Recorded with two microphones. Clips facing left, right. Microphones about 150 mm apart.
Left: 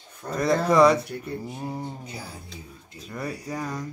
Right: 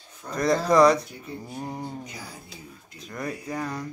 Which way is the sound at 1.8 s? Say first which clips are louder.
Even; 30° left (ahead or behind).